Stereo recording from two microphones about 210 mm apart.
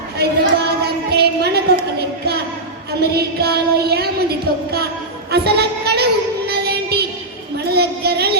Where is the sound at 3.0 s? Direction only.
50° right (ahead or behind).